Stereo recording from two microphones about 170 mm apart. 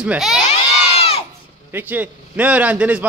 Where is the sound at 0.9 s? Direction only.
35° left (ahead or behind).